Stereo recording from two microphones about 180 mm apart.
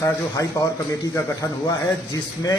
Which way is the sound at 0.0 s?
20° left (ahead or behind).